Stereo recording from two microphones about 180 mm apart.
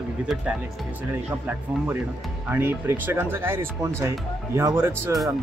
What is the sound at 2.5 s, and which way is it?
Speech, 10° right (ahead or behind).